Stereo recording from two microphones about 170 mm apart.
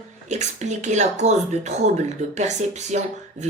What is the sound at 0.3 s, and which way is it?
Speech, 45° right (ahead or behind).